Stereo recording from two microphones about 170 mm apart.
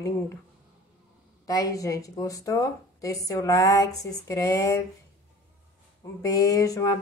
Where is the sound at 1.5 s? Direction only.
20° left (ahead or behind).